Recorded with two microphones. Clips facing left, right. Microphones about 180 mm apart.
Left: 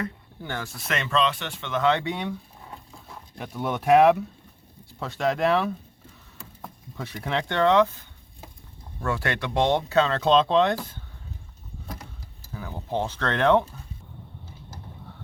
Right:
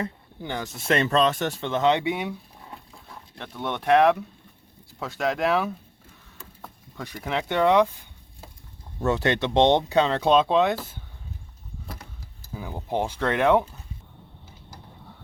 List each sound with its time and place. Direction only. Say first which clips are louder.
0.0 s speech: right 1 dB; 15° right (ahead or behind); by 1.7 s 40° right (ahead or behind)
1.7 s speech: right 1 dB; 20° right (ahead or behind)
3.3 s speech: left 2 dB; 10° left (ahead or behind); by 7.9 s 10° right (ahead or behind)
9.0 s speech: right 5 dB; 20° right (ahead or behind)
12.5 s speech: right 1 dB; 15° right (ahead or behind)